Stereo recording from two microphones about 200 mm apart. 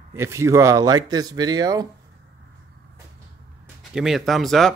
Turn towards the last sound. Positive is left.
turn(degrees=0)  # may be behind; listen again after turning